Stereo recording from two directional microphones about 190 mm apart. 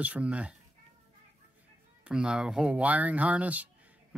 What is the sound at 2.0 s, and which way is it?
Speech, 5° right (ahead or behind).